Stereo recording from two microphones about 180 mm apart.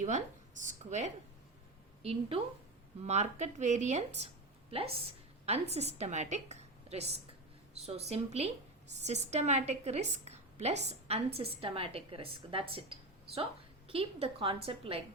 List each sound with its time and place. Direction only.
0.0 s a woman's voice: 45° right (ahead or behind)
6.0 s a woman's voice: 40° right (ahead or behind)